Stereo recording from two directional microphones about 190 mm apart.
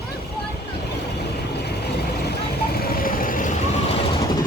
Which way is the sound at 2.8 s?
50° left (ahead or behind).